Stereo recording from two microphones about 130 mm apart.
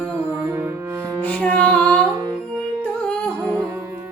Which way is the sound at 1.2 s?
10° left (ahead or behind).